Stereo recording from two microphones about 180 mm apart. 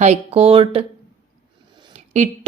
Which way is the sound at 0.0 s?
35° right (ahead or behind).